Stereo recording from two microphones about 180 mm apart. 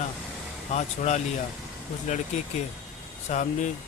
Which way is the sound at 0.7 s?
40° left (ahead or behind).